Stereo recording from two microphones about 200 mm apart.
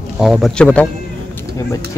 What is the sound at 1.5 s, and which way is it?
Speech, 15° left (ahead or behind).